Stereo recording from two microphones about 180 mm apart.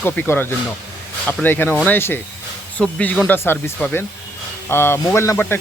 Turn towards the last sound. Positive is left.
turn(degrees=15)  # may be behind; listen again after turning